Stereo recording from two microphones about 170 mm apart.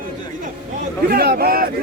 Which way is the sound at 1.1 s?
65° right (ahead or behind).